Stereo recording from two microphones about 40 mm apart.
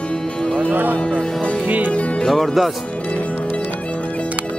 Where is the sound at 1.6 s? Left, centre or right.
Right.